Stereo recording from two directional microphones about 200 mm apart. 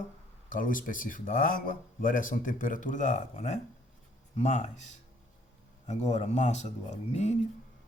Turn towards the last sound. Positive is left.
turn(degrees=35)  # may be behind; listen again after turning